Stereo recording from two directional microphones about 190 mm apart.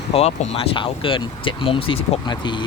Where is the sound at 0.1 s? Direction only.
30° left (ahead or behind).